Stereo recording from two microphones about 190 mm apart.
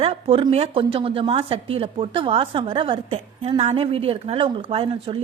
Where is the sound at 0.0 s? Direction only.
30° right (ahead or behind).